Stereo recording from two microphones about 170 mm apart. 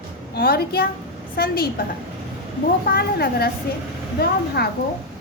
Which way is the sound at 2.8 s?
65° left (ahead or behind).